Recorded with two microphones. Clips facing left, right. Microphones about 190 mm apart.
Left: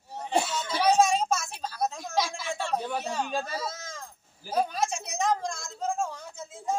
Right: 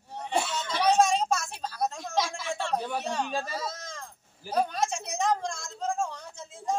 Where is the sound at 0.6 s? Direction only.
5° left (ahead or behind).